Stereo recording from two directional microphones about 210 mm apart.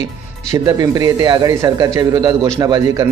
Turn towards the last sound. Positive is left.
turn(degrees=-15)  # may be behind; listen again after turning